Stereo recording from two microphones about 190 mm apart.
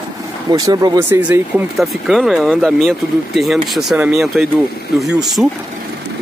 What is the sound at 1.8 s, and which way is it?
Speech, centre (ahead or behind).